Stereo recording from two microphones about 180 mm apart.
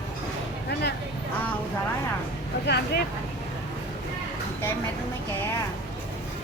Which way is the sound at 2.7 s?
65° left (ahead or behind).